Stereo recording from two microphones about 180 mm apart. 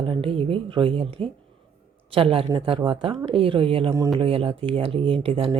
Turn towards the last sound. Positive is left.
turn(degrees=-30)  # may be behind; listen again after turning